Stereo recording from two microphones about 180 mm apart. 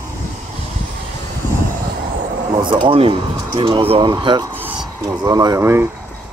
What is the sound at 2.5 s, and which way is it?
Speech, 25° right (ahead or behind).